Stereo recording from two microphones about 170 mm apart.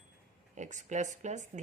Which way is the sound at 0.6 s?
45° right (ahead or behind).